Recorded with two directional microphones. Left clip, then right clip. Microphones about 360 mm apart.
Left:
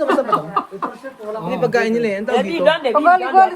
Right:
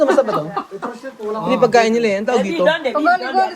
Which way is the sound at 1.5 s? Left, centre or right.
Centre.